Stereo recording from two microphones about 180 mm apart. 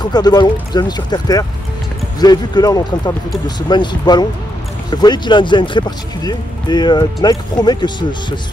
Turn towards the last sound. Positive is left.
turn(degrees=25)  # may be behind; listen again after turning